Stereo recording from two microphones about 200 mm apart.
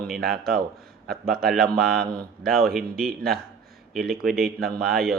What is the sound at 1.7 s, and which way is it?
Speech, 50° right (ahead or behind).